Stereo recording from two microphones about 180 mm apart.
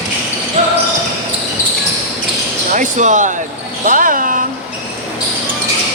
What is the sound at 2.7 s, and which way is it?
Speech, 45° right (ahead or behind).